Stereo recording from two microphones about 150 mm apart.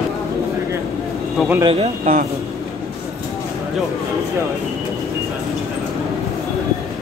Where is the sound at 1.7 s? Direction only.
45° right (ahead or behind).